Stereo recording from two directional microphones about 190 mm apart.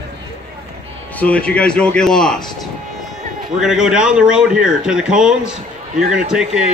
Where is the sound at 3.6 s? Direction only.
5° right (ahead or behind).